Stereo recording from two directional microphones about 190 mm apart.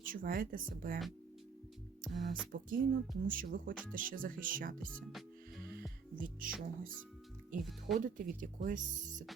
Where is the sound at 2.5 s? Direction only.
45° right (ahead or behind).